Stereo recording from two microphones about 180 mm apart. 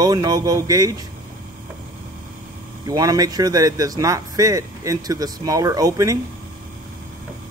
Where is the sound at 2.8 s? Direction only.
20° right (ahead or behind).